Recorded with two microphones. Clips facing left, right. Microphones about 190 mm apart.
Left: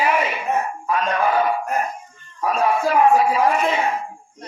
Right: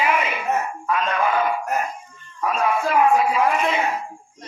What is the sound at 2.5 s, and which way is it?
A man's voice, 35° left (ahead or behind).